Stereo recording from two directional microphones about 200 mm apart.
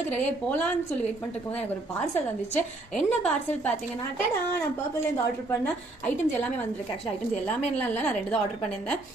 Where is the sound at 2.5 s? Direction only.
10° left (ahead or behind).